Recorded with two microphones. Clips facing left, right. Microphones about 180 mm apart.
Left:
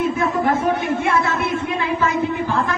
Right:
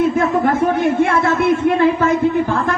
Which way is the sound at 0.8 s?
55° right (ahead or behind).